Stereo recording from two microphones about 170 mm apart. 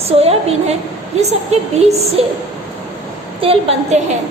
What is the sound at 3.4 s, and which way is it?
Speech, 40° right (ahead or behind).